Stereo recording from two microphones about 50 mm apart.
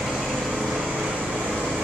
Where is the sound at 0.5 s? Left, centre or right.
Centre.